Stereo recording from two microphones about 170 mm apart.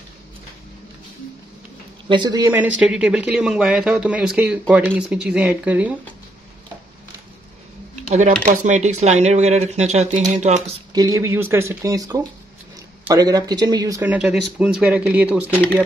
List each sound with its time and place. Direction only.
2.0 s speech: 25° right (ahead or behind)
2.5 s speech: 10° right (ahead or behind)
7.9 s a sound: 45° right (ahead or behind)
8.6 s speech: 45° right (ahead or behind)
10.9 s speech: 20° right (ahead or behind)
14.0 s speech: 5° right (ahead or behind)